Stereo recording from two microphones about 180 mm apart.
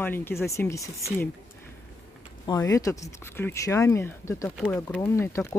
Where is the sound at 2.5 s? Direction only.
20° left (ahead or behind).